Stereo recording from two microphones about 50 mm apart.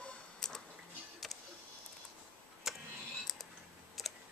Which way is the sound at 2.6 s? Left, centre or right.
Centre.